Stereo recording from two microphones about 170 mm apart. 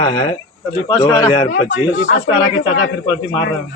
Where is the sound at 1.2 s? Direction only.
35° left (ahead or behind).